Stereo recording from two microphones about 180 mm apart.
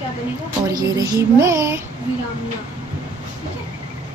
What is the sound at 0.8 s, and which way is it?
A woman's voice, 20° right (ahead or behind).